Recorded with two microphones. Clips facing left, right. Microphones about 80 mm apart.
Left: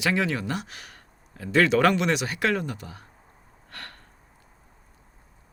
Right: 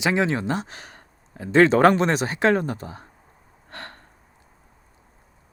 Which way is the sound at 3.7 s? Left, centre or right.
Right.